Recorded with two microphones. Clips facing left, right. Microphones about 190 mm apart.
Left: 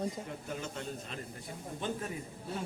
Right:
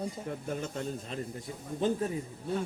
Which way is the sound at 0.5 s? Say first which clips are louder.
Right 3 dB; 40° right (ahead or behind).